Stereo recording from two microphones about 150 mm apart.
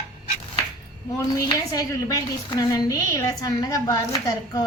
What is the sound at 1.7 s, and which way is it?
A woman's voice, 25° left (ahead or behind).